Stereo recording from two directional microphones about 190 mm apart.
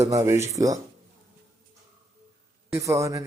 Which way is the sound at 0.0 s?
15° right (ahead or behind).